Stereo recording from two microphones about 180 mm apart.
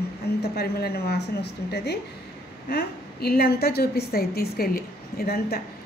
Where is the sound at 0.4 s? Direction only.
60° left (ahead or behind).